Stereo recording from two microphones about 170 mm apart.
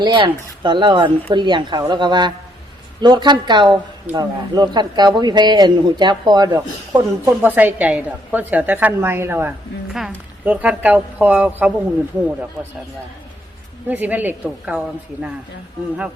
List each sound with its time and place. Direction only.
0.0 s speech: 25° right (ahead or behind)
7.3 s a woman's voice: 10° right (ahead or behind)
13.8 s a woman's voice: 10° right (ahead or behind)